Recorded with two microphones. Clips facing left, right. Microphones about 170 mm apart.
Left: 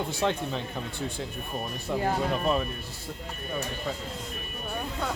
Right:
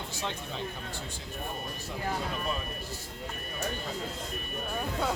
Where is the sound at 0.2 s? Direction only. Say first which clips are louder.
Left 10 dB; 60° left (ahead or behind).